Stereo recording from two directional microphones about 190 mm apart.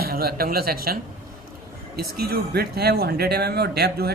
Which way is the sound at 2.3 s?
55° right (ahead or behind).